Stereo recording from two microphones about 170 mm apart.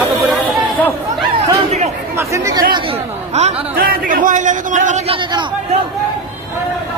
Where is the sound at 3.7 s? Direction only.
55° right (ahead or behind); by 5.4 s 35° right (ahead or behind).